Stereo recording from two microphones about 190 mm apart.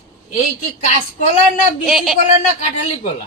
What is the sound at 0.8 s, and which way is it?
Speech, 35° left (ahead or behind).